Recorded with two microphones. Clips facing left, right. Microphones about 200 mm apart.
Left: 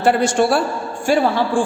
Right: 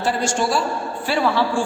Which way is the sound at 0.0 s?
60° left (ahead or behind).